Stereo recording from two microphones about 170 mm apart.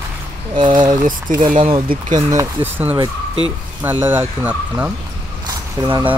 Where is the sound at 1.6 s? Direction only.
40° right (ahead or behind).